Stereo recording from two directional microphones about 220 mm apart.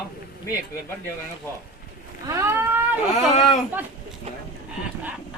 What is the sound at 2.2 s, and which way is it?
Speech, 15° right (ahead or behind).